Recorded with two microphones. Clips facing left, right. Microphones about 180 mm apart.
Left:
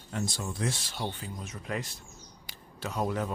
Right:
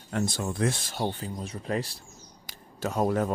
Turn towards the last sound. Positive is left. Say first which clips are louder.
# right 5 dB
turn(degrees=-45)  # may be behind; listen again after turning